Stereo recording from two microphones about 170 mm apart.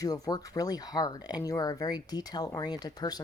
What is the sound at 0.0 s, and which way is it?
Speech, 25° left (ahead or behind).